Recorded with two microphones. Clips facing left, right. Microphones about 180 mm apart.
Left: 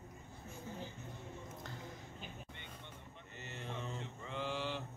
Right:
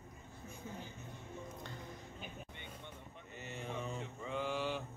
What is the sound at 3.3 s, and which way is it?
Mantra, 15° right (ahead or behind).